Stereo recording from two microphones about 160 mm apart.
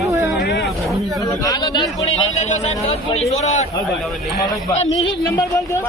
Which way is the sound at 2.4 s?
45° left (ahead or behind).